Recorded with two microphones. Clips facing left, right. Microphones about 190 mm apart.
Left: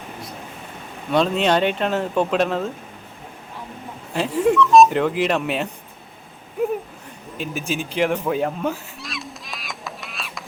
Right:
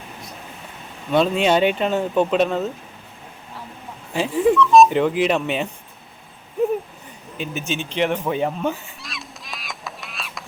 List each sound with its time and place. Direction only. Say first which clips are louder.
1.1 s speech: right 1 dB; 5° right (ahead or behind)
4.4 s speech: even; centre (ahead or behind)
7.3 s speech: even; centre (ahead or behind)
7.7 s honk: left 1 dB; 5° left (ahead or behind)